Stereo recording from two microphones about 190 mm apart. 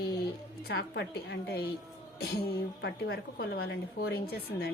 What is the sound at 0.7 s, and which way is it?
A woman's voice, 60° left (ahead or behind).